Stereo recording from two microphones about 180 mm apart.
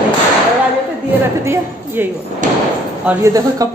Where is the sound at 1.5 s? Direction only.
10° right (ahead or behind).